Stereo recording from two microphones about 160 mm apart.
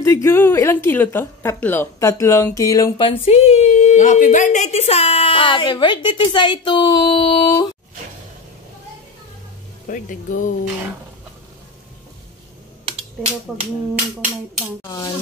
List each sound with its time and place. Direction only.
0.0 s a woman's voice: 15° left (ahead or behind)
3.1 s a woman's voice: 40° left (ahead or behind)
9.8 s speech: 55° left (ahead or behind)
12.8 s a sound: 35° right (ahead or behind)
14.9 s speech: 25° left (ahead or behind)